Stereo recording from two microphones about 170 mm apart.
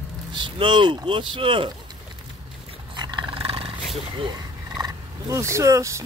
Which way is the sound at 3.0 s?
25° right (ahead or behind).